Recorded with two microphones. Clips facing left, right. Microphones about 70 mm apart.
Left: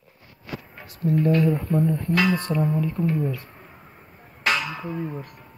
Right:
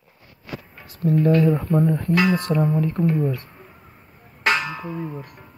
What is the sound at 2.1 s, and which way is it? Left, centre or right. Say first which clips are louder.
Speech: right 2 dB; centre.